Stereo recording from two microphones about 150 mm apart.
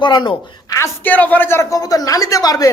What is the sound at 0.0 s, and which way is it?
Speech, 30° left (ahead or behind).